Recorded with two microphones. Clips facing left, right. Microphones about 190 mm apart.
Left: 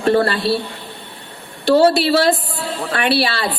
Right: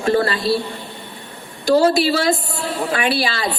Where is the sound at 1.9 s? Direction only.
60° left (ahead or behind).